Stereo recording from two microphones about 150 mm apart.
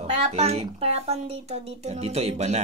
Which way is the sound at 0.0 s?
45° right (ahead or behind).